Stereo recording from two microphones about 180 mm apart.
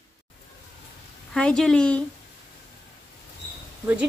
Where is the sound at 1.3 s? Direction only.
5° left (ahead or behind).